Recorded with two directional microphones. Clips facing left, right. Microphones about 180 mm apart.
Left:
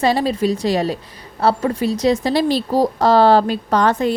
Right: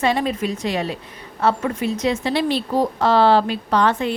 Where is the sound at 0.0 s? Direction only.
35° left (ahead or behind).